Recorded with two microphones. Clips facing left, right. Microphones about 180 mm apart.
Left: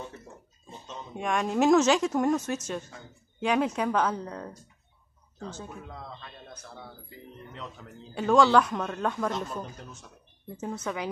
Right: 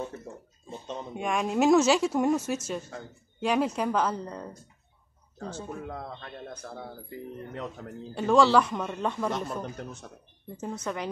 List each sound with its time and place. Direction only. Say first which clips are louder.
0.7 s a sound: right 5 dB; 60° right (ahead or behind)
1.1 s a woman's voice: even; centre (ahead or behind)
5.9 s speech: right 5 dB; 55° right (ahead or behind)
8.1 s a woman's voice: even; centre (ahead or behind)
9.3 s speech: right 2 dB; 60° right (ahead or behind)
10.6 s a woman's voice: even; centre (ahead or behind)